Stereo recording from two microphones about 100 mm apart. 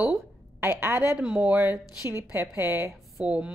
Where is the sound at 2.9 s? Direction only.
10° right (ahead or behind).